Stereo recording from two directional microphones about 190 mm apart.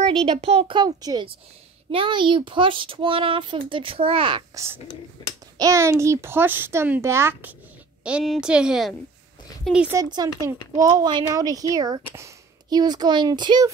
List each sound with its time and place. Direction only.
0.2 s a child's voice: 30° right (ahead or behind); by 9.9 s 5° right (ahead or behind)
9.9 s speech: 20° right (ahead or behind)